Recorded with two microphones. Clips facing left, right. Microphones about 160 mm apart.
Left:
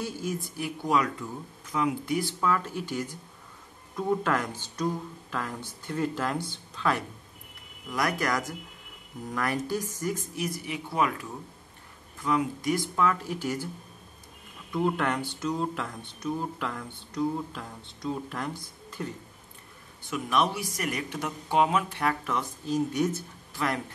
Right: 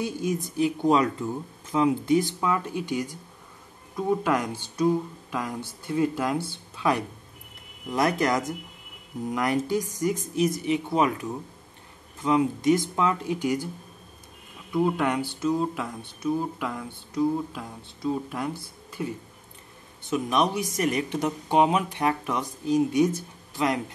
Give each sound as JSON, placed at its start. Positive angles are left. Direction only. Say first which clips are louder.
{"t": 0.0, "sound": "speech", "louder": "right 5 dB", "side_deg": -15}
{"t": 14.7, "sound": "speech", "louder": "right 3 dB", "side_deg": -10}